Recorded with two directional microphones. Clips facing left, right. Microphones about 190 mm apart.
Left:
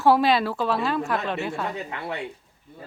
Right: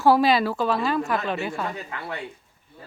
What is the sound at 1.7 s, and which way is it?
Speech, 20° left (ahead or behind).